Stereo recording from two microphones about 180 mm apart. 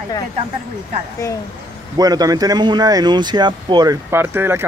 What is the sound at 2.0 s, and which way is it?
Speech, 20° right (ahead or behind).